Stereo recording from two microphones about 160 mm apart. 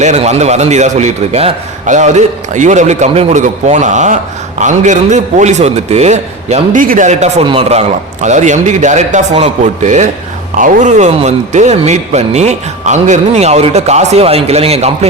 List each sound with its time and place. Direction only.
0.0 s speech: 45° right (ahead or behind)